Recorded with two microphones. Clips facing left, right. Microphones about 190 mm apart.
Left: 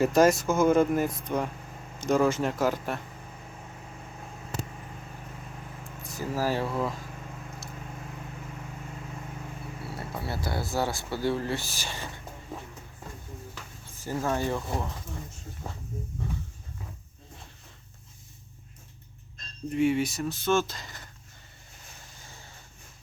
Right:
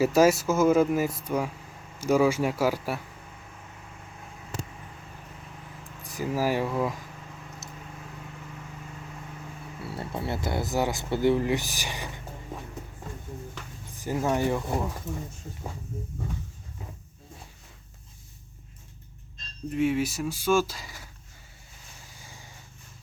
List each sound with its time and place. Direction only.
0.0 s speech: 5° right (ahead or behind)
5.8 s speech: 15° right (ahead or behind)
10.2 s speech: 20° right (ahead or behind)
14.0 s speech: 15° right (ahead or behind)
19.7 s speech: centre (ahead or behind)
22.2 s vehicle: 10° right (ahead or behind)